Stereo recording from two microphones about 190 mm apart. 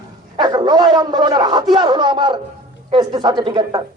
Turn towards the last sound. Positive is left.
turn(degrees=-25)  # may be behind; listen again after turning